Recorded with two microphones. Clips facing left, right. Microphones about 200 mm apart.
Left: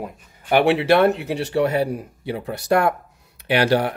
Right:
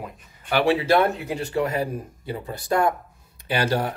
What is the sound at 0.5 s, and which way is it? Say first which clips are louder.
Speech: left 3 dB; 70° left (ahead or behind).